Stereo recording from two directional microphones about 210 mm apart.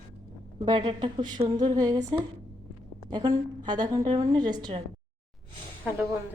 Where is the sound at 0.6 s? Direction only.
25° right (ahead or behind).